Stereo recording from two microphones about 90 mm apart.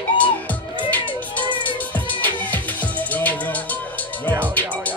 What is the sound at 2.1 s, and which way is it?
Music, 20° left (ahead or behind).